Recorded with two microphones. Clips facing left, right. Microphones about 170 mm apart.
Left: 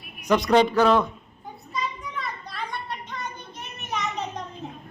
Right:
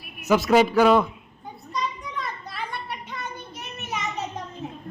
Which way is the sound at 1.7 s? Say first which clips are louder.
Right 1 dB; centre (ahead or behind).